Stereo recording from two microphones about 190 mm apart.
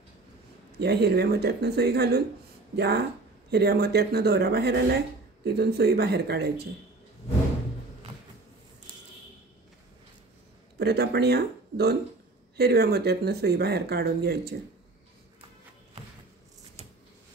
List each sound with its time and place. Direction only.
0.7 s speech: 60° right (ahead or behind)
10.8 s speech: 60° right (ahead or behind)